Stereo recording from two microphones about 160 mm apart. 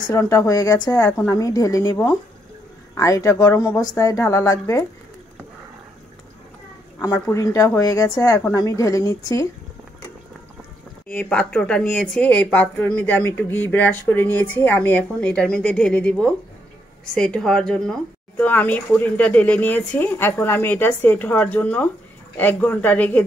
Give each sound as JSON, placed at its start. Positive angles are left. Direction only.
{"t": 0.1, "sound": "a woman's voice", "side_deg": 20}
{"t": 7.0, "sound": "a woman's voice", "side_deg": 20}
{"t": 11.1, "sound": "a woman's voice", "side_deg": 5}